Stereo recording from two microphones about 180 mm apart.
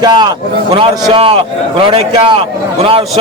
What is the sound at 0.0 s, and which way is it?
A man's voice, 25° right (ahead or behind).